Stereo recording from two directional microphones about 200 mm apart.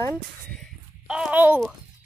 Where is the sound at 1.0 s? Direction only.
5° right (ahead or behind).